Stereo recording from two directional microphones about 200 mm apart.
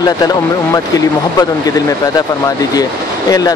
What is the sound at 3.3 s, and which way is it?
Speech, 20° left (ahead or behind).